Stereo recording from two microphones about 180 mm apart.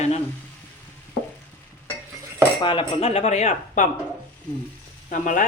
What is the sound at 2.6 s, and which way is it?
Speech, 25° left (ahead or behind).